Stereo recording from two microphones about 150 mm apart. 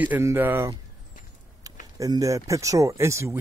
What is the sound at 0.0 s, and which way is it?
Speech, 15° right (ahead or behind).